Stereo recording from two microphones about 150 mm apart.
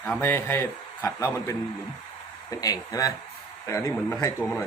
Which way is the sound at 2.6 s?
25° left (ahead or behind).